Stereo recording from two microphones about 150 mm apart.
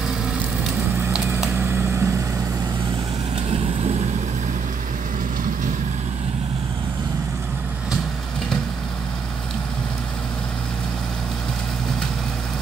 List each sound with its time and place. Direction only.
0.9 s vehicle: 15° right (ahead or behind)